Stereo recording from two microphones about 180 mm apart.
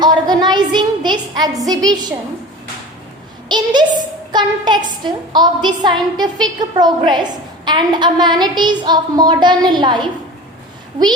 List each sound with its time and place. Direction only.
0.0 s a woman's voice: 25° right (ahead or behind)
3.5 s a woman's voice: 25° right (ahead or behind)